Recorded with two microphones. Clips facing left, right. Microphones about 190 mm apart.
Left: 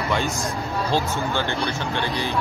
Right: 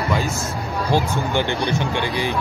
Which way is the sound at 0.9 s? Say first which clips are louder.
Right 4 dB; 15° right (ahead or behind).